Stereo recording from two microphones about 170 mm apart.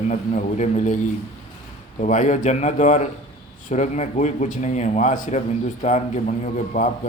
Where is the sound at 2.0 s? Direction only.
45° left (ahead or behind).